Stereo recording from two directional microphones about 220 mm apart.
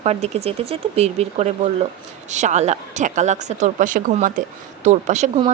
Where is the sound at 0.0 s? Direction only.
30° right (ahead or behind).